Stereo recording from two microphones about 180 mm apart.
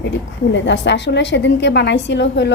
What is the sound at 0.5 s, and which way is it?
A woman's voice, 85° left.